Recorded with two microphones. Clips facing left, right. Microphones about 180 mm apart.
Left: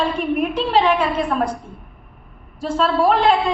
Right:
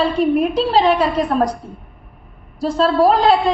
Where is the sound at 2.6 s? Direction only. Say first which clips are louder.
Right 3 dB; 40° right (ahead or behind).